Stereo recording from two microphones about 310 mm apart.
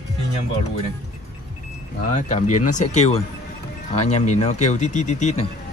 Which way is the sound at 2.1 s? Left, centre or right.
Left.